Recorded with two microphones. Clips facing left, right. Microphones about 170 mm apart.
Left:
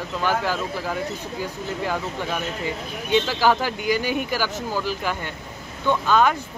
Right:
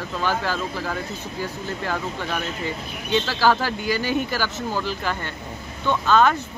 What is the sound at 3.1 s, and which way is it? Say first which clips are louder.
Speech: left 1 dB; 15° left (ahead or behind).